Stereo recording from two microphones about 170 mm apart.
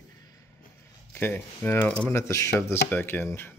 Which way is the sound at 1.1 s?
10° left (ahead or behind).